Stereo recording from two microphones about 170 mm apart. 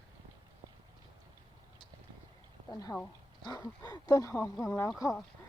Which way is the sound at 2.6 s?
20° left (ahead or behind).